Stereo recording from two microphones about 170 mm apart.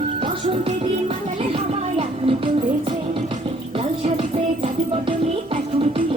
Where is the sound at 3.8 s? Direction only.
35° right (ahead or behind).